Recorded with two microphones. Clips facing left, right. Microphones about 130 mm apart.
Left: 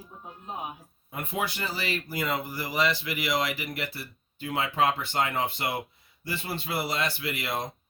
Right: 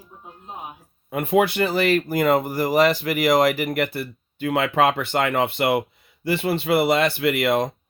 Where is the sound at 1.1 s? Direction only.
70° right (ahead or behind).